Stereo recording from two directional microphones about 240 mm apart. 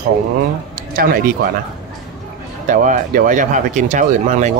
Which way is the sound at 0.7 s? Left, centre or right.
Right.